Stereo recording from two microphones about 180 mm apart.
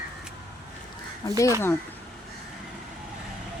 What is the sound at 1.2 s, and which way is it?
Speech, 15° left (ahead or behind).